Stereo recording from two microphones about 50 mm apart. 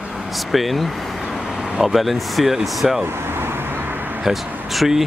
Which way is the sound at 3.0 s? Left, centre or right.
Right.